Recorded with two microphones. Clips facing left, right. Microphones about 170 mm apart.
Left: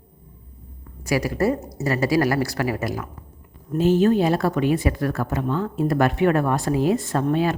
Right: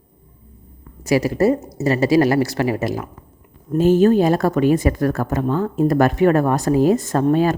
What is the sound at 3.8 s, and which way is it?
Speech, 45° right (ahead or behind).